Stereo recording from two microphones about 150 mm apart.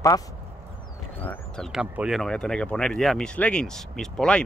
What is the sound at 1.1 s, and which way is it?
A man's voice, 10° left (ahead or behind).